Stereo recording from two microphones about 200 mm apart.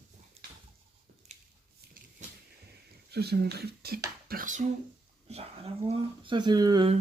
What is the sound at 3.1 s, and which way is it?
Speech, 55° right (ahead or behind).